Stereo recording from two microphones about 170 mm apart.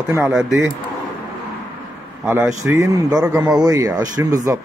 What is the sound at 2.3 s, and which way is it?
A man's voice, 15° right (ahead or behind).